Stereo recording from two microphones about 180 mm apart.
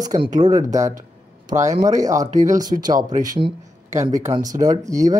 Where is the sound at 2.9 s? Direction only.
45° right (ahead or behind).